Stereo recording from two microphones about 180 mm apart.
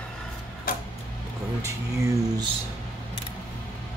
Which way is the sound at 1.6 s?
15° right (ahead or behind).